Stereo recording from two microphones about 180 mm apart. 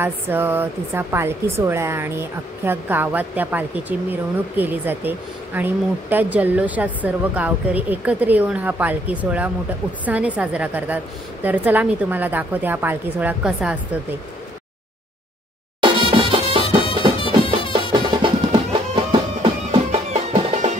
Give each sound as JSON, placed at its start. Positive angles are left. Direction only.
{"t": 0.0, "sound": "speech", "side_deg": -10}
{"t": 15.8, "sound": "music", "side_deg": -30}
{"t": 17.7, "sound": "music", "side_deg": -25}